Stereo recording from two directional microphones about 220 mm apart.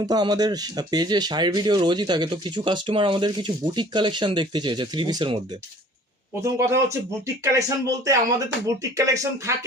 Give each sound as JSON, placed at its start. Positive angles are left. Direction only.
{"t": 0.0, "sound": "speech", "side_deg": -20}